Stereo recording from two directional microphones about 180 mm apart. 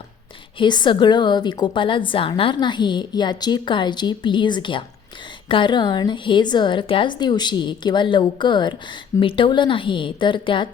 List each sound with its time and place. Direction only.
0.6 s a woman's voice: 25° left (ahead or behind)